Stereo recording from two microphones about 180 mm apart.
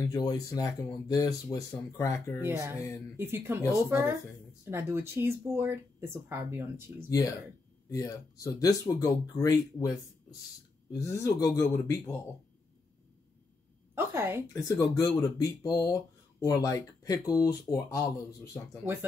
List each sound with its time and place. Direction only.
0.0 s speech: 20° left (ahead or behind)
3.2 s speech: 15° right (ahead or behind)
7.9 s speech: 20° left (ahead or behind)
13.9 s a woman's voice: 15° right (ahead or behind)
14.5 s speech: 20° left (ahead or behind)